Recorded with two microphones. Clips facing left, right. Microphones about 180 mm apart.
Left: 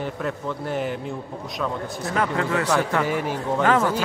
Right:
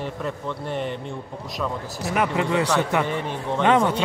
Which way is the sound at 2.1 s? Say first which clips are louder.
Right 2 dB; 15° right (ahead or behind).